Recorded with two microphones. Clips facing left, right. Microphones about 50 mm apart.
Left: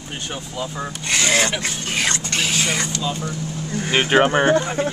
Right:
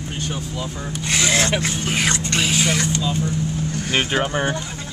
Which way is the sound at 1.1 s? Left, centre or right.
Centre.